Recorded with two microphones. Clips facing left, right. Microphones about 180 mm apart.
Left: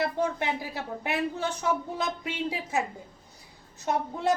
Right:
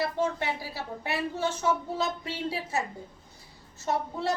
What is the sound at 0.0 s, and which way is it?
A woman's voice, 15° left (ahead or behind).